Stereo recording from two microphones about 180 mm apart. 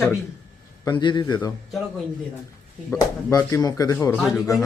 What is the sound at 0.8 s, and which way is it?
Speech, 25° left (ahead or behind).